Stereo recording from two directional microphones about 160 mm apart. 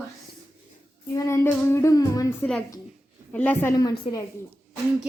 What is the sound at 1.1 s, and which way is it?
Child singing, 20° left (ahead or behind).